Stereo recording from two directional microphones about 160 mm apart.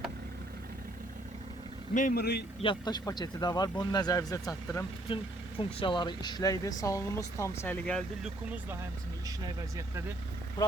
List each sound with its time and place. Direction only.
1.9 s speech: 55° left (ahead or behind); by 2.4 s 80° left
2.6 s speech: 30° left (ahead or behind)
5.0 s speech: 35° left (ahead or behind); by 8.3 s 5° left (ahead or behind)
9.2 s speech: 25° right (ahead or behind)